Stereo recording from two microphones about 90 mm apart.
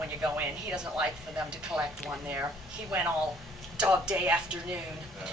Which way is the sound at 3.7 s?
10° right (ahead or behind).